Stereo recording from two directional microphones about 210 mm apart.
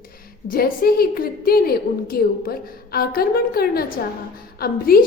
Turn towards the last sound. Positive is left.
turn(degrees=45)  # may be behind; listen again after turning